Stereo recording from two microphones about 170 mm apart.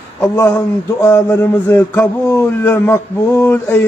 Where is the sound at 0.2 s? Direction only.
15° left (ahead or behind).